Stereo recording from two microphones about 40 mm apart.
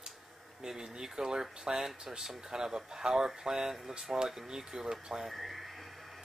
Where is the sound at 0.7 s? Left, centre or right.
Centre.